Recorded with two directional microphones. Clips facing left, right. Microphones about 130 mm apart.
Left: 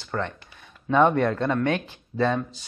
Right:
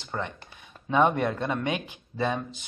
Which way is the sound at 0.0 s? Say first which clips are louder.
Left 4 dB; 15° right (ahead or behind).